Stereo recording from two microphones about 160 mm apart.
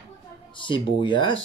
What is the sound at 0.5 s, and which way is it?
Speech, 30° left (ahead or behind).